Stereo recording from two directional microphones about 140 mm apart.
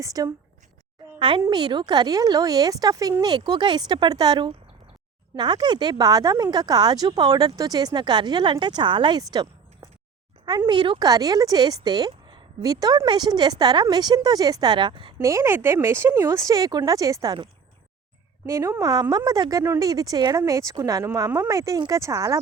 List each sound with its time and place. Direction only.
0.0 s speech: 25° right (ahead or behind)
1.4 s speech: 30° right (ahead or behind)
15.2 s speech: 20° right (ahead or behind)